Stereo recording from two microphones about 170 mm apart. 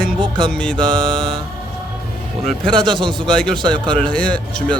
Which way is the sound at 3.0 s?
5° left (ahead or behind).